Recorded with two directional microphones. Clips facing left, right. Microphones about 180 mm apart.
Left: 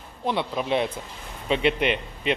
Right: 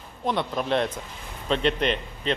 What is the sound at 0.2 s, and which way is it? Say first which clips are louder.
A man's voice: even; 5° left (ahead or behind).